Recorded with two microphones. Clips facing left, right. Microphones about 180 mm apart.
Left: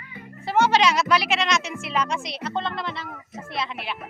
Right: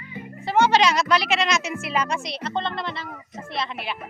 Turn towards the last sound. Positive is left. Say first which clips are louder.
# right 1 dB
turn(degrees=0)  # may be behind; listen again after turning